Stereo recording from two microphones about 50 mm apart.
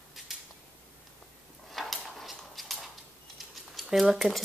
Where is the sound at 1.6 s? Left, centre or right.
Centre.